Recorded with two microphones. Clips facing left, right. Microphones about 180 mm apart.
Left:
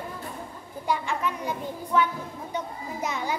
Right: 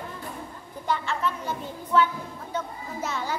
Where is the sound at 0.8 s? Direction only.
15° left (ahead or behind).